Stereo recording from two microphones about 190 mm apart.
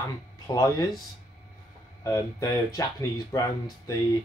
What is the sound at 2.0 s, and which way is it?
Speech, 20° left (ahead or behind).